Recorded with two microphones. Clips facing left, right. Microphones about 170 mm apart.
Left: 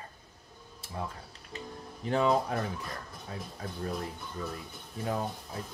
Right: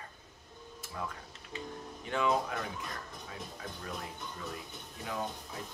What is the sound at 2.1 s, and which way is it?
Speech, 35° left (ahead or behind).